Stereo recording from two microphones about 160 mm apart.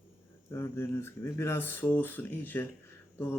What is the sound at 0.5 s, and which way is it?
Speech, 15° left (ahead or behind).